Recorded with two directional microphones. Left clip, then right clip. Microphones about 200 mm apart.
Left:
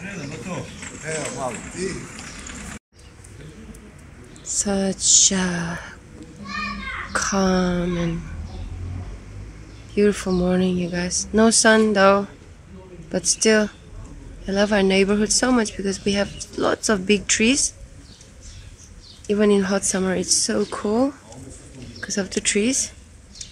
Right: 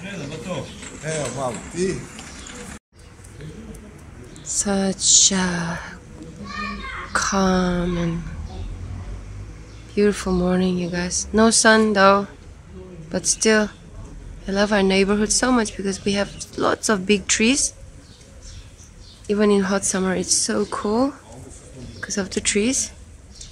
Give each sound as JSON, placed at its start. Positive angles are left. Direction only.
{"t": 0.0, "sound": "a sound", "side_deg": -10}
{"t": 1.0, "sound": "a sound", "side_deg": -50}
{"t": 4.5, "sound": "speech", "side_deg": 0}
{"t": 7.1, "sound": "speech", "side_deg": 5}
{"t": 9.9, "sound": "speech", "side_deg": 5}
{"t": 19.2, "sound": "speech", "side_deg": 0}